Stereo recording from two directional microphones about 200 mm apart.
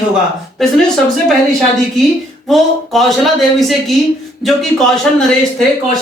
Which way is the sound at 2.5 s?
Centre (ahead or behind).